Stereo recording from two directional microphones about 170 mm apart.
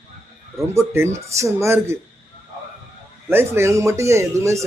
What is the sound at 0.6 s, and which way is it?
Speech, 15° right (ahead or behind).